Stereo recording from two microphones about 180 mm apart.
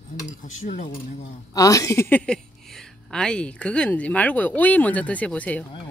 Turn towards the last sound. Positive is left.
turn(degrees=10)  # may be behind; listen again after turning